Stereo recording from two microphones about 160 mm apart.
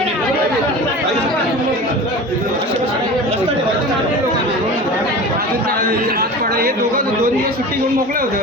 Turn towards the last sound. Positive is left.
turn(degrees=-70)  # may be behind; listen again after turning